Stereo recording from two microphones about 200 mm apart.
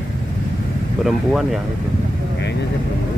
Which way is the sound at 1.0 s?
Centre (ahead or behind).